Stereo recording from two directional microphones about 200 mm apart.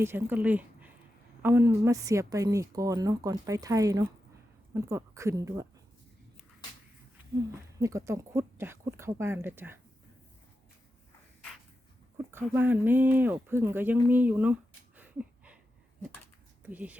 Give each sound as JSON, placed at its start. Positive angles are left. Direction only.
{"t": 0.0, "sound": "a woman's voice", "side_deg": -10}
{"t": 7.5, "sound": "a woman's voice", "side_deg": -15}
{"t": 12.1, "sound": "a woman's voice", "side_deg": -10}
{"t": 14.1, "sound": "a sound", "side_deg": -10}
{"t": 16.6, "sound": "a woman's voice", "side_deg": -5}